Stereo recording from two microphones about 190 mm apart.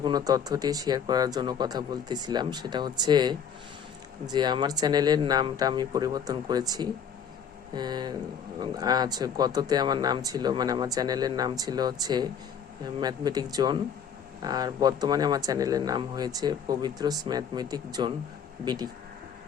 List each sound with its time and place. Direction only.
0.0 s speech: 20° right (ahead or behind)